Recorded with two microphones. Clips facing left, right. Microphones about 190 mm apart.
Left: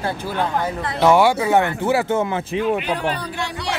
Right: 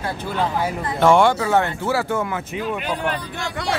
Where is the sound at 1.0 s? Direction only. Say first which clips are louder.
Even; 5° left (ahead or behind); by 2.8 s 30° left (ahead or behind).